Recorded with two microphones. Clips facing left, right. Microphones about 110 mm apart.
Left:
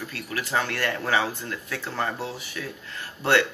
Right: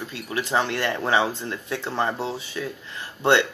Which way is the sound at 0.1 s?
20° right (ahead or behind).